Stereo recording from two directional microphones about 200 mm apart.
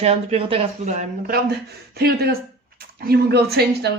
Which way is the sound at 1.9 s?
50° right (ahead or behind).